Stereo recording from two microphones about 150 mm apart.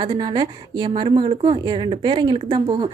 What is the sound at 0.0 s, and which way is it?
Speech, 30° right (ahead or behind).